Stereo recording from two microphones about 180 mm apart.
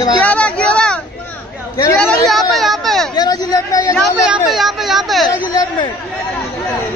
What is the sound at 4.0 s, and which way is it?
Speech, centre (ahead or behind).